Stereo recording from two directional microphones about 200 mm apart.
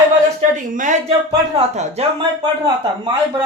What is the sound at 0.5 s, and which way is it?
Speech, 40° right (ahead or behind).